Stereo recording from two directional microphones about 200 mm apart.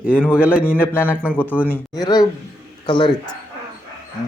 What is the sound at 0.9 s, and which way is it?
Speech, 5° right (ahead or behind).